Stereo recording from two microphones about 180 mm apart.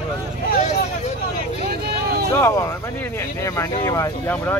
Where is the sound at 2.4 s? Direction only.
15° left (ahead or behind).